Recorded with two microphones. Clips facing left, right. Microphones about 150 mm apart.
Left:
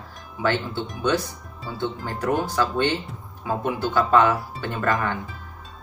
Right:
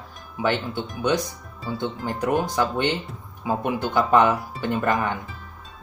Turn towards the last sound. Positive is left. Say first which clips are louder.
# right 2 dB
turn(degrees=-15)  # may be behind; listen again after turning